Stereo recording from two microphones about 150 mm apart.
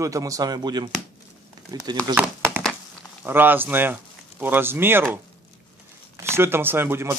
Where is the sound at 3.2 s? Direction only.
15° right (ahead or behind).